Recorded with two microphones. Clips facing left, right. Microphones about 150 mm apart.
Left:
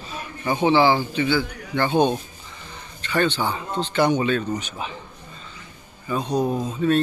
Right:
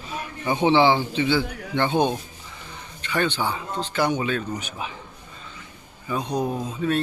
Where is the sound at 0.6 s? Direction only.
20° right (ahead or behind).